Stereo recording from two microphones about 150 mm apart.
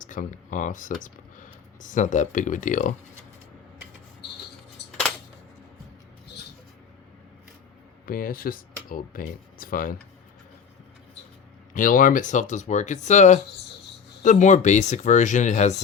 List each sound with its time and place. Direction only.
0.0 s speech: 60° left (ahead or behind)
4.9 s a sound: 5° left (ahead or behind)
8.0 s speech: 75° left (ahead or behind)
11.7 s speech: 65° left (ahead or behind)